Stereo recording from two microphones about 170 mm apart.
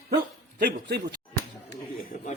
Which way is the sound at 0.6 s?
75° right (ahead or behind).